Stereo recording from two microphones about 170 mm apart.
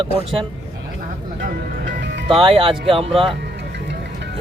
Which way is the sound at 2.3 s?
35° right (ahead or behind).